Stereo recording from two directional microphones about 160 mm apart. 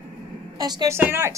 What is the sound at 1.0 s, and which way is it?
Speech, 15° right (ahead or behind).